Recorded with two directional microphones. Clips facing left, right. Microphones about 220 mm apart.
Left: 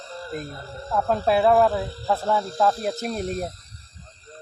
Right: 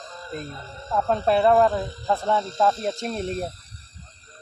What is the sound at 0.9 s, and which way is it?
Speech, 5° left (ahead or behind).